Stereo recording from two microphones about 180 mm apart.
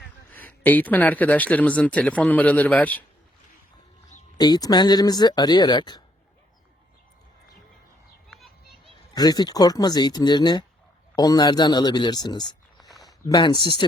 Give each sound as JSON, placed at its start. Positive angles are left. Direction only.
{"t": 0.3, "sound": "speech", "side_deg": 10}
{"t": 4.4, "sound": "speech", "side_deg": 20}
{"t": 8.3, "sound": "children playing", "side_deg": 0}
{"t": 9.1, "sound": "speech", "side_deg": 20}
{"t": 12.4, "sound": "a sound", "side_deg": 0}
{"t": 13.2, "sound": "speech", "side_deg": 20}